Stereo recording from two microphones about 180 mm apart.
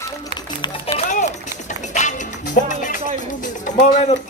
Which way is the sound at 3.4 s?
45° left (ahead or behind).